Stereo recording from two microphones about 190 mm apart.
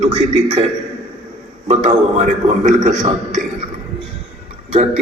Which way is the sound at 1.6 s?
40° right (ahead or behind).